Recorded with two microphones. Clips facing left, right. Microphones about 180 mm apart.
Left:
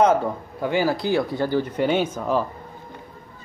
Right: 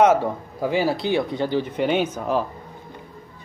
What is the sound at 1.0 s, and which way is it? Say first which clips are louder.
Speech: even; 20° right (ahead or behind).